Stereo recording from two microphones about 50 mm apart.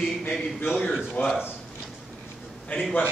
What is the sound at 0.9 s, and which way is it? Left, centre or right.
Speech, left.